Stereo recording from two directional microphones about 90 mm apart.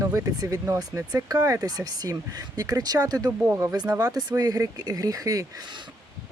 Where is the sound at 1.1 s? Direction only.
45° right (ahead or behind).